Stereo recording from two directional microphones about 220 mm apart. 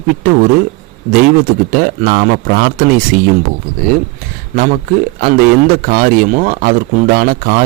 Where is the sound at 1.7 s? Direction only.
40° right (ahead or behind).